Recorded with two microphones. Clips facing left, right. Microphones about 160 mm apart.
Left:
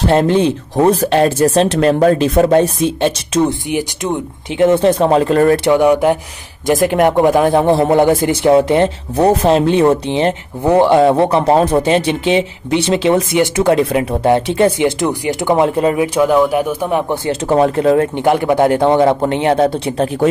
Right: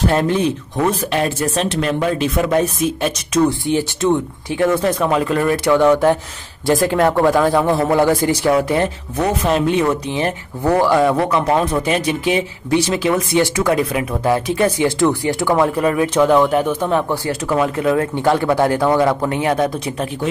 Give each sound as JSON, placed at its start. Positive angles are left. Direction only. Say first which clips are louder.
{"t": 0.1, "sound": "speech", "louder": "left 5 dB", "side_deg": 30}
{"t": 3.6, "sound": "speech", "louder": "right 2 dB", "side_deg": 15}
{"t": 5.7, "sound": "speech", "louder": "left 2 dB", "side_deg": 15}
{"t": 16.2, "sound": "speech", "louder": "even", "side_deg": 5}
{"t": 17.1, "sound": "speech", "louder": "left 4 dB", "side_deg": 25}
{"t": 18.1, "sound": "speech", "louder": "left 3 dB", "side_deg": 20}